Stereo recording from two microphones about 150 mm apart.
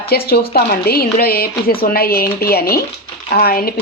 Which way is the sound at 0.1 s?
90° left.